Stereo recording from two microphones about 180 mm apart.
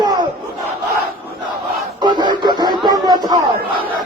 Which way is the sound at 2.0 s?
25° right (ahead or behind).